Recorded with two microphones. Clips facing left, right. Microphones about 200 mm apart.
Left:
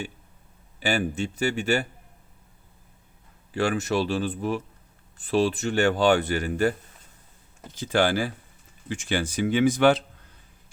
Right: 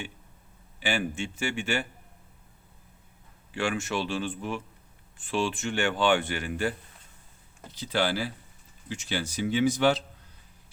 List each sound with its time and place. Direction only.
0.8 s speech: 40° left (ahead or behind)
3.5 s speech: 40° left (ahead or behind); by 10.0 s 55° left (ahead or behind)